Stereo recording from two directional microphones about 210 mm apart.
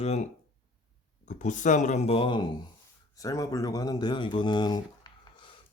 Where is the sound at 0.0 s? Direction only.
30° left (ahead or behind).